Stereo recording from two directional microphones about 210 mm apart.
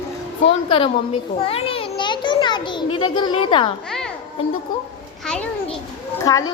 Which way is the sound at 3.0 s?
20° left (ahead or behind).